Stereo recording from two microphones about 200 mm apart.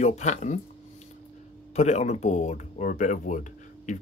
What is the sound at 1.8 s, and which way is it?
Speech, 35° left (ahead or behind).